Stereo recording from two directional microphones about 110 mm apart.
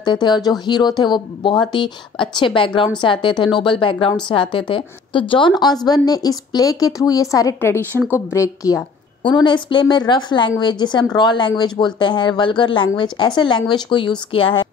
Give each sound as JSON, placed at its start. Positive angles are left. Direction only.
{"t": 0.0, "sound": "a woman's voice", "side_deg": 40}
{"t": 9.2, "sound": "speech", "side_deg": 45}